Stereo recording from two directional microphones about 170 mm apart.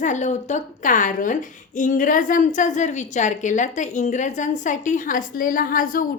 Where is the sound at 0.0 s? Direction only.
45° left (ahead or behind).